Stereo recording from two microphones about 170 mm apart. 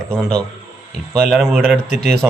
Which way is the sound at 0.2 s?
5° left (ahead or behind).